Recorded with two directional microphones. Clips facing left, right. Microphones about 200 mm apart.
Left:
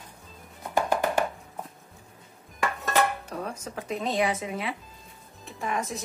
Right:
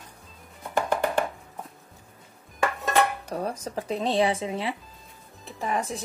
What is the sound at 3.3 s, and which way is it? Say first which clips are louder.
Speech: right 4 dB; 35° right (ahead or behind).